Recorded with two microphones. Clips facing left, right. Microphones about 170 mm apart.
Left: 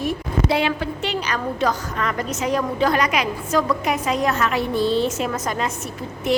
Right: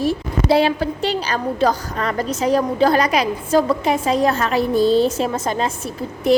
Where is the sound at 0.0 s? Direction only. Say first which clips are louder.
Right 3 dB; 35° right (ahead or behind).